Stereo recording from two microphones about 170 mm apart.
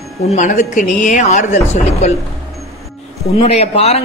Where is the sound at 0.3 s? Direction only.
45° left (ahead or behind).